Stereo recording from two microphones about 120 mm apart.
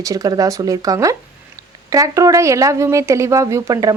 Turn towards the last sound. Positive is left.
turn(degrees=-25)  # may be behind; listen again after turning